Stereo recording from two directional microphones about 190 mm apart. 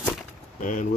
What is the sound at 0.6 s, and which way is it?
Speech, 45° left (ahead or behind).